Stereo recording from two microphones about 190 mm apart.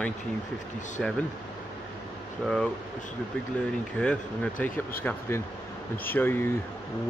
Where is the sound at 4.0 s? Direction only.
5° left (ahead or behind).